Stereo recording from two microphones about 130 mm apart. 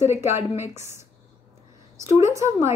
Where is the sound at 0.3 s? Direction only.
15° right (ahead or behind).